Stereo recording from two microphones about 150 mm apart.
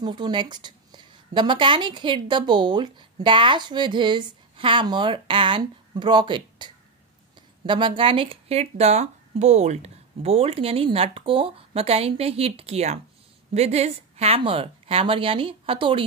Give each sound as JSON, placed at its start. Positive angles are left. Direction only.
{"t": 0.0, "sound": "a woman's voice", "side_deg": -30}